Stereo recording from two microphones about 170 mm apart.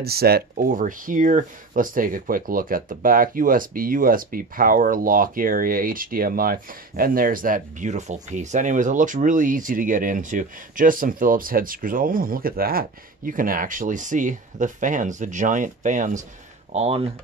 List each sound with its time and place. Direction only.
0.0 s speech: 65° right (ahead or behind); by 16.3 s 45° right (ahead or behind)
16.7 s speech: 35° right (ahead or behind)